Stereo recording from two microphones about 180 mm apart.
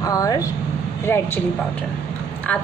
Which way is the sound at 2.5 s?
10° left (ahead or behind).